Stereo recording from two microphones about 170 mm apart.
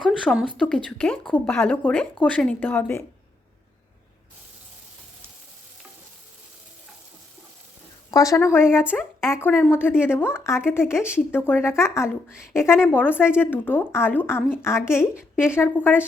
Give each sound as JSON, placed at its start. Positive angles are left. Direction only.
{"t": 0.3, "sound": "speech", "side_deg": 0}
{"t": 8.1, "sound": "speech", "side_deg": 20}
{"t": 8.8, "sound": "a woman's voice", "side_deg": -5}
{"t": 9.2, "sound": "speech", "side_deg": 15}